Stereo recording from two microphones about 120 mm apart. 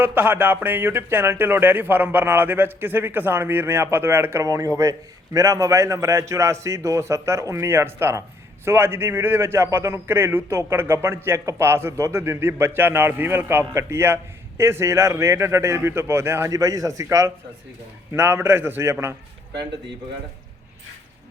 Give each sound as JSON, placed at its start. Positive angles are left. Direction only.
{"t": 0.0, "sound": "speech", "side_deg": -15}